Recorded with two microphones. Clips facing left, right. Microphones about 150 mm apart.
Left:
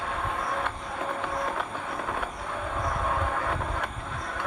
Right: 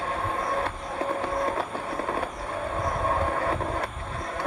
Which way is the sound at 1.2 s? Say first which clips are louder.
Right 3 dB; 35° right (ahead or behind).